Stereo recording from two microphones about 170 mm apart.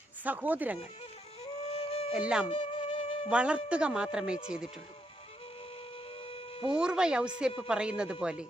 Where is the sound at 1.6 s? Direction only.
35° left (ahead or behind).